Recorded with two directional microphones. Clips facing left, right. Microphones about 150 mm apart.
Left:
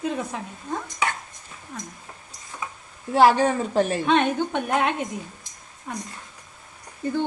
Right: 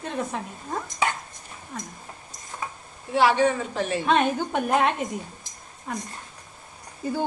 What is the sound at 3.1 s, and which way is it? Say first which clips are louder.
Speech: left 3 dB; 40° left (ahead or behind).